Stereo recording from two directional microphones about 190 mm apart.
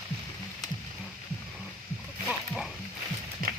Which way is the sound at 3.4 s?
50° right (ahead or behind).